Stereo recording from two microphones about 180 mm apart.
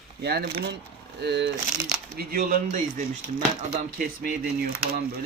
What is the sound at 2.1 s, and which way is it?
Speech, 55° right (ahead or behind).